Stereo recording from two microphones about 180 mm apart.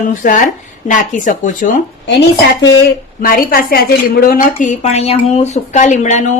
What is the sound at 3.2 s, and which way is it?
A woman's voice, 55° left (ahead or behind).